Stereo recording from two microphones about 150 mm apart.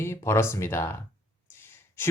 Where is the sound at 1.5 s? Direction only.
15° left (ahead or behind).